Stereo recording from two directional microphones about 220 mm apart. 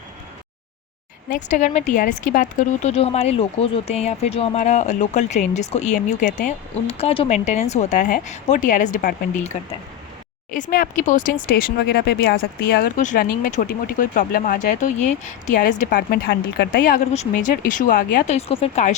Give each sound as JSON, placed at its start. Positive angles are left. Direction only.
{"t": 1.3, "sound": "speech", "side_deg": 35}
{"t": 10.5, "sound": "speech", "side_deg": 40}